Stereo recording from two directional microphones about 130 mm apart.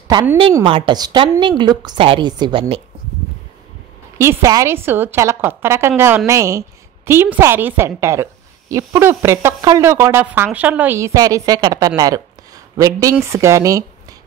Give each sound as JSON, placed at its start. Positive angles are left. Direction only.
{"t": 0.7, "sound": "a woman's voice", "side_deg": -45}
{"t": 4.2, "sound": "a woman's voice", "side_deg": -20}
{"t": 11.0, "sound": "a woman's voice", "side_deg": -25}